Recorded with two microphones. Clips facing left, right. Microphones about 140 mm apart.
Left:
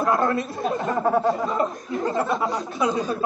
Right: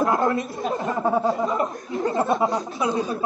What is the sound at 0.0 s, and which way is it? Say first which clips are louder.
Speech: even; 25° right (ahead or behind).